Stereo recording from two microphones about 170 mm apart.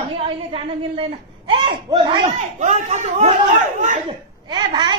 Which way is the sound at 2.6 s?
45° right (ahead or behind).